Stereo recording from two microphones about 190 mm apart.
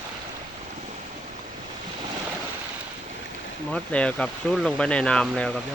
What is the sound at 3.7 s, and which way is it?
Speech, 5° left (ahead or behind).